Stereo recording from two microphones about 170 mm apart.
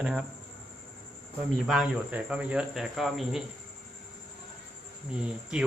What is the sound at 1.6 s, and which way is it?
A man's voice, centre (ahead or behind).